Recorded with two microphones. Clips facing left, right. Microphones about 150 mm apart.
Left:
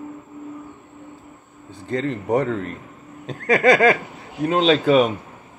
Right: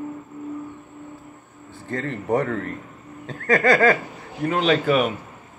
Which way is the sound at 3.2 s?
15° left (ahead or behind).